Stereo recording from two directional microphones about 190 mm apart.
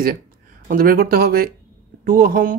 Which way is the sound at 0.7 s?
50° right (ahead or behind).